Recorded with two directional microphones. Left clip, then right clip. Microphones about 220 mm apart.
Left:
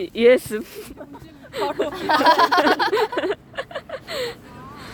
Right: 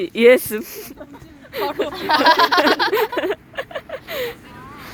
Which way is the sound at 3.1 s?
10° right (ahead or behind).